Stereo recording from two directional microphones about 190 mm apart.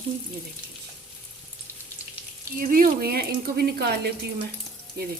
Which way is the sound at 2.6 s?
50° right (ahead or behind).